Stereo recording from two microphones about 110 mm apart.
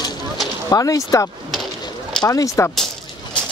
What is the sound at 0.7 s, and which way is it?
Speech, 30° left (ahead or behind).